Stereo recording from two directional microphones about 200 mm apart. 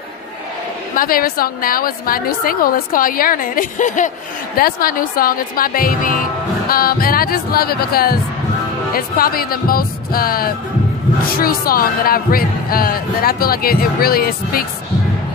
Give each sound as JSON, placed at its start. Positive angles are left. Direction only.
{"t": 0.9, "sound": "speech", "side_deg": 45}